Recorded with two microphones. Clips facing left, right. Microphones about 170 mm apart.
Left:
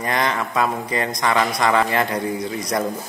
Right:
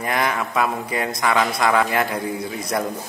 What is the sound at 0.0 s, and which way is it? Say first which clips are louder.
Speech: even; 5° right (ahead or behind).